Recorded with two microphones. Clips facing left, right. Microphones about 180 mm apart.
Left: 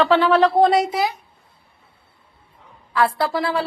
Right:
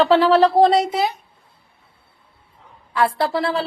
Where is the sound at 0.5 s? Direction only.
25° right (ahead or behind).